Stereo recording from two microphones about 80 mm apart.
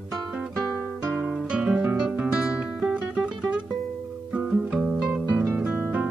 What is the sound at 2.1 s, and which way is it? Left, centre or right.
Music, centre.